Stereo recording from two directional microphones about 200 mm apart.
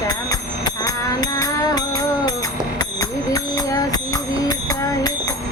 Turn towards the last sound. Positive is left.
turn(degrees=15)  # may be behind; listen again after turning